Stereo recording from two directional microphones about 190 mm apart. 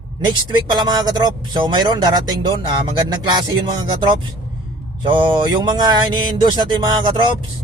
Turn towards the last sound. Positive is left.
turn(degrees=-25)  # may be behind; listen again after turning